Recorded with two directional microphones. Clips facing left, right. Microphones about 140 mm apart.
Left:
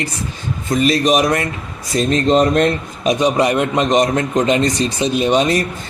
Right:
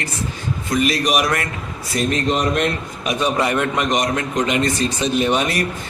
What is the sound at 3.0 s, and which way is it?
A man's voice, 20° left (ahead or behind).